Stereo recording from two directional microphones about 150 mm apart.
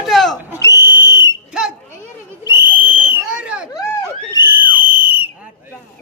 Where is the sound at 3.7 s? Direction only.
25° left (ahead or behind).